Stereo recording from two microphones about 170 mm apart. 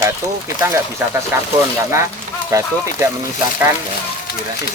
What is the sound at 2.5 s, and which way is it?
Speech, 15° right (ahead or behind).